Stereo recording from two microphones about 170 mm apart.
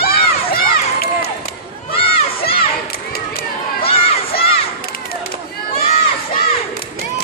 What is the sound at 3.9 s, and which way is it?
Crowd, 35° left (ahead or behind).